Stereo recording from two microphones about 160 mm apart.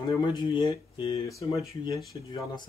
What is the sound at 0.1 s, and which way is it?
Speech, 30° left (ahead or behind).